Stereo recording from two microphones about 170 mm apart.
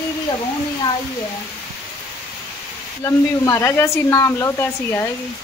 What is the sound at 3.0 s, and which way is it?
Speech, 15° left (ahead or behind).